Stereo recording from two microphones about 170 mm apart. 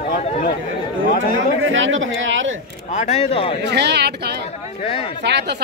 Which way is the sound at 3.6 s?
85° right.